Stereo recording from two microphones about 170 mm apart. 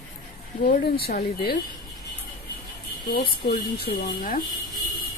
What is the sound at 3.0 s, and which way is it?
A woman's voice, 65° left (ahead or behind).